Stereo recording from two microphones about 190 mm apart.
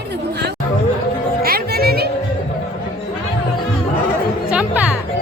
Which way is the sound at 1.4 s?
55° right (ahead or behind).